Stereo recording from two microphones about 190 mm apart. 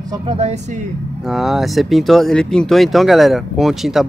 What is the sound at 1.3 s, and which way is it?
Speech, centre (ahead or behind).